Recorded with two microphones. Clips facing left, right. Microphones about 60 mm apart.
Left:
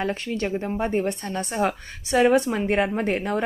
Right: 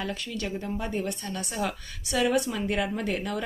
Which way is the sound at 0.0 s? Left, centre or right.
Left.